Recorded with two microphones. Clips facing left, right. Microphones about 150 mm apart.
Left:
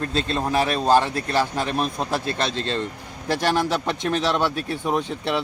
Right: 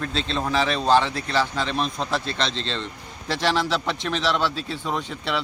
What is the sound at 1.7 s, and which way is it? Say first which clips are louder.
Speech: left 1 dB; 10° left (ahead or behind).